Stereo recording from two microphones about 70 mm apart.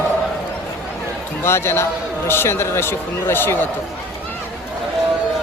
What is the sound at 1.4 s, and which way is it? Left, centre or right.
Speech, left.